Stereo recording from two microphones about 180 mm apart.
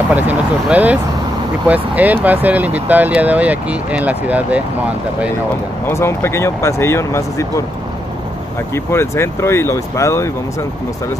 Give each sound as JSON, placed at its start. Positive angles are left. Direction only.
{"t": 0.1, "sound": "speech", "side_deg": -10}
{"t": 5.9, "sound": "speech", "side_deg": 15}
{"t": 8.7, "sound": "speech", "side_deg": 15}